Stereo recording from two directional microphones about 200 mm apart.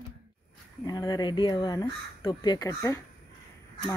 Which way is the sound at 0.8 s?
20° left (ahead or behind).